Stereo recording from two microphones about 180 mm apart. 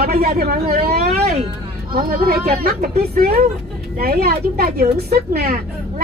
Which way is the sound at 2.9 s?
60° right (ahead or behind).